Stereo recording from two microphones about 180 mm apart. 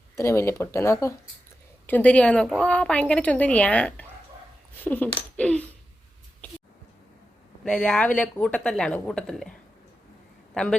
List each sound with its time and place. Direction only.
0.2 s a woman's voice: 15° left (ahead or behind)
7.6 s speech: 5° left (ahead or behind)